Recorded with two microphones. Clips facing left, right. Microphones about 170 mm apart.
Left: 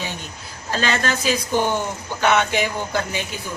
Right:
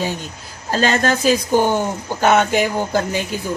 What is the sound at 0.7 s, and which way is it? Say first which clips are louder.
Speech: right 5 dB; 40° right (ahead or behind).